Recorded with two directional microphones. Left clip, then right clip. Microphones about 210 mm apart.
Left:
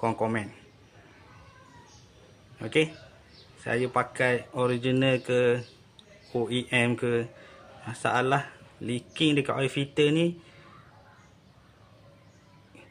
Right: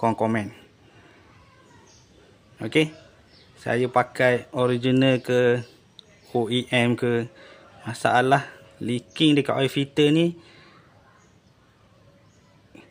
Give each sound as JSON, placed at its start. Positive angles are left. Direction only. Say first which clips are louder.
{"t": 0.0, "sound": "speech", "louder": "right 5 dB", "side_deg": -45}
{"t": 2.6, "sound": "a man's voice", "louder": "right 3 dB", "side_deg": -50}